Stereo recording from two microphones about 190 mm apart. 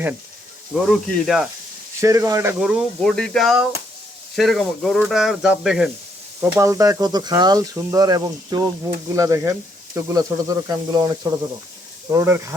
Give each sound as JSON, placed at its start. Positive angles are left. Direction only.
{"t": 0.7, "sound": "speech", "side_deg": 0}
{"t": 2.0, "sound": "speech", "side_deg": -15}
{"t": 6.6, "sound": "speech", "side_deg": -15}